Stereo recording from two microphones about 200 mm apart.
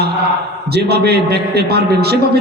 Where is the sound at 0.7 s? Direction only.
55° right (ahead or behind).